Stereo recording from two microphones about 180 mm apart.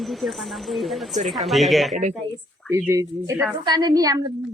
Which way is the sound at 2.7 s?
10° right (ahead or behind).